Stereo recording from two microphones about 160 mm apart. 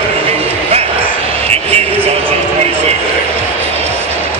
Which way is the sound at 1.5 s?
40° right (ahead or behind).